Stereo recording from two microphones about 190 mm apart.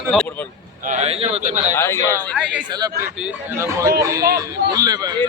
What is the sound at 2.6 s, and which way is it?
Speech, 20° right (ahead or behind).